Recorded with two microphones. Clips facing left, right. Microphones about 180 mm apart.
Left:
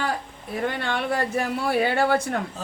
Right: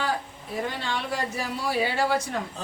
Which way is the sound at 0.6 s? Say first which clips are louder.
Left 4 dB; 60° left (ahead or behind).